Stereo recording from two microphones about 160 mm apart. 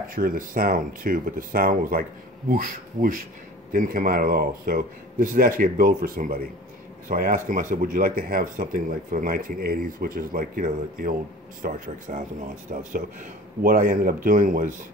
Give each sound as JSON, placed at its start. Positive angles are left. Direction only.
{"t": 0.1, "sound": "speech", "side_deg": -65}